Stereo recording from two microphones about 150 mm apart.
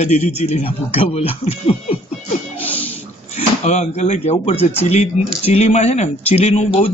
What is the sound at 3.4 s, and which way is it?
A man's voice, 50° left (ahead or behind).